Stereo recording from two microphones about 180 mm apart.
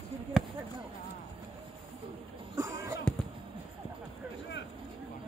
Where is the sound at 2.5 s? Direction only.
15° right (ahead or behind).